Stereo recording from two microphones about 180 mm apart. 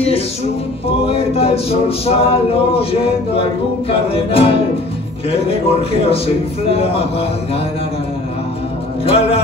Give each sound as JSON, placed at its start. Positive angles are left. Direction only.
{"t": 1.0, "sound": "a capella", "side_deg": 35}
{"t": 4.1, "sound": "a capella", "side_deg": 30}
{"t": 9.0, "sound": "a capella", "side_deg": 30}